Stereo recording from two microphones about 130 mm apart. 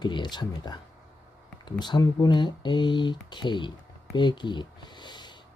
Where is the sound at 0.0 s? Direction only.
35° left (ahead or behind).